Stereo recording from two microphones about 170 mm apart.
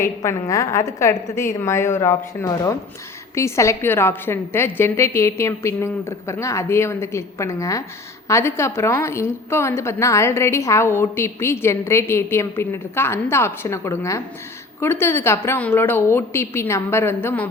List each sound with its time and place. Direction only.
0.0 s a woman's voice: 15° left (ahead or behind)